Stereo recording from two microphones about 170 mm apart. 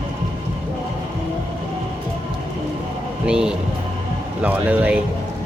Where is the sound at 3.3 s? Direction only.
5° right (ahead or behind).